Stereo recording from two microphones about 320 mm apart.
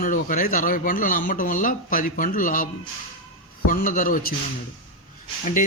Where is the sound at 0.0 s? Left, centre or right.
Left.